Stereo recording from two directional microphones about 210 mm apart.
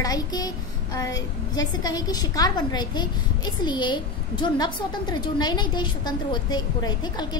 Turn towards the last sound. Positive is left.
turn(degrees=20)  # may be behind; listen again after turning